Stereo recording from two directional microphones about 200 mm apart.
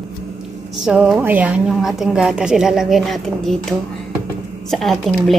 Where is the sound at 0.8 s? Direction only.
5° right (ahead or behind).